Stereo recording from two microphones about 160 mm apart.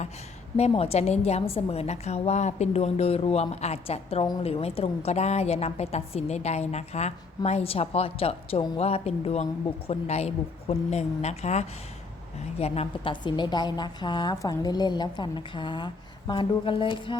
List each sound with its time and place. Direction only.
0.5 s a woman's voice: 40° left (ahead or behind)